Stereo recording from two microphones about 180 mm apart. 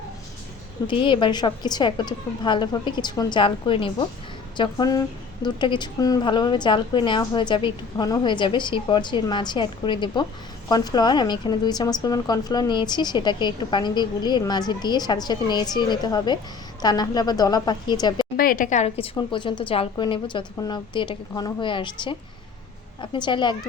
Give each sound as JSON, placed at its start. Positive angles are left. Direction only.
{"t": 0.9, "sound": "a woman's voice", "side_deg": 25}
{"t": 18.3, "sound": "a woman's voice", "side_deg": 50}